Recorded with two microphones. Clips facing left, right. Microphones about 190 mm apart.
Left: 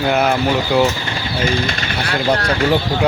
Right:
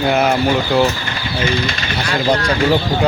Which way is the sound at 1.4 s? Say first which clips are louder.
Even; 50° left (ahead or behind).